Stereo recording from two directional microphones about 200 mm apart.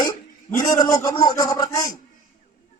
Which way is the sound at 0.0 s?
20° left (ahead or behind).